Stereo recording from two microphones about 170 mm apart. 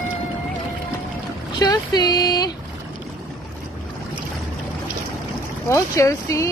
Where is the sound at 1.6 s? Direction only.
25° left (ahead or behind).